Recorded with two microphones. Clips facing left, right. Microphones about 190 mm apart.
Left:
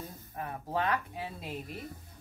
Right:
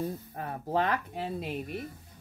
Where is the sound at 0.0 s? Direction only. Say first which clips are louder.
Right 7 dB; 45° right (ahead or behind).